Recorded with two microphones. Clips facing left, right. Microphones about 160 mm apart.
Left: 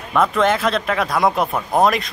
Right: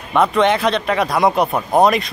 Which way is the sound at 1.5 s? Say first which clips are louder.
Right 3 dB; 20° right (ahead or behind).